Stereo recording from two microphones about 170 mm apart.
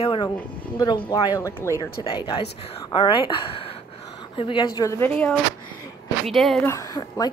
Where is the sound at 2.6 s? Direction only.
35° left (ahead or behind); by 5.1 s 20° left (ahead or behind).